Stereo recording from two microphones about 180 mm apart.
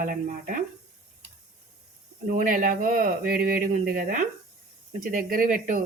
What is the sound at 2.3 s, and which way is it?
Speech, 50° right (ahead or behind).